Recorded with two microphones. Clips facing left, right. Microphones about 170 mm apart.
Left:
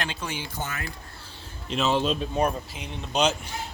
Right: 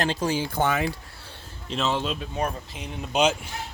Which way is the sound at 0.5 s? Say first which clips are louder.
Right 10 dB; 75° right (ahead or behind).